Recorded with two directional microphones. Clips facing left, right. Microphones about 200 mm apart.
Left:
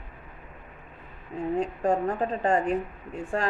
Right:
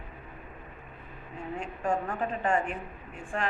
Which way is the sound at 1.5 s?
35° left (ahead or behind).